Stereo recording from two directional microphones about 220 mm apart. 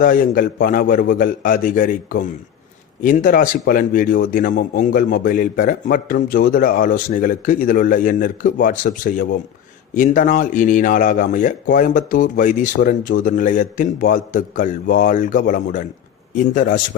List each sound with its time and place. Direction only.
0.0 s speech: 40° left (ahead or behind)